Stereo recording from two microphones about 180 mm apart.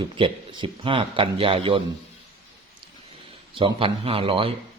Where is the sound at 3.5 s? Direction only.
30° right (ahead or behind).